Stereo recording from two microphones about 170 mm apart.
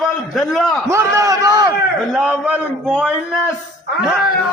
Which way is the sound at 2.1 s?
5° right (ahead or behind).